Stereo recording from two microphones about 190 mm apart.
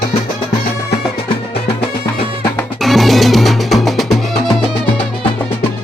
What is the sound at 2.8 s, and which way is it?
Music, centre (ahead or behind).